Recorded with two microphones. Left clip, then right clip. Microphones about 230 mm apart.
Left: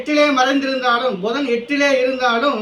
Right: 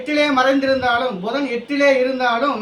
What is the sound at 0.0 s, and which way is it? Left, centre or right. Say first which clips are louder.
A man's voice: left 1 dB; centre.